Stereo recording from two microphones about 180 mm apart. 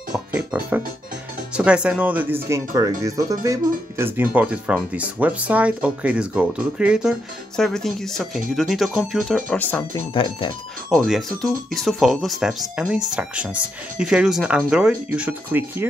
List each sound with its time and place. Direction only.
0.1 s music: 10° right (ahead or behind)
1.6 s speech: 5° right (ahead or behind)
10.1 s speech: 25° left (ahead or behind)
10.9 s speech: centre (ahead or behind)